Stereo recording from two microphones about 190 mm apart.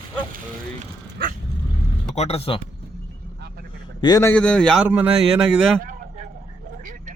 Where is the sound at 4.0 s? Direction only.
20° left (ahead or behind).